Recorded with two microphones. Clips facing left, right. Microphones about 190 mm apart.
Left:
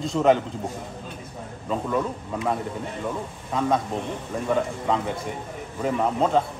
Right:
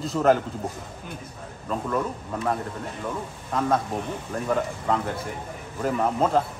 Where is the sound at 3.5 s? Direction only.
Centre (ahead or behind).